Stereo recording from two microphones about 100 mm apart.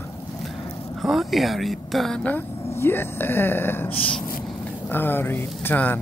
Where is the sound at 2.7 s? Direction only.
25° left (ahead or behind).